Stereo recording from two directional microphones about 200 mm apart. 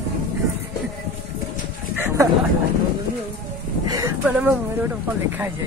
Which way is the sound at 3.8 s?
20° right (ahead or behind).